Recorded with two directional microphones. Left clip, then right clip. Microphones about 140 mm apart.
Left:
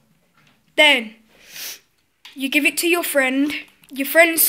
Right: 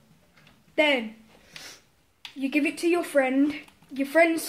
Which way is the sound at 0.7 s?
25° left (ahead or behind).